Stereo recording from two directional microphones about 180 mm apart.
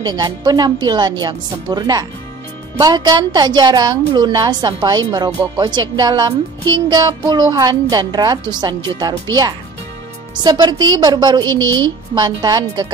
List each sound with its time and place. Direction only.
0.0 s a woman's voice: 20° right (ahead or behind)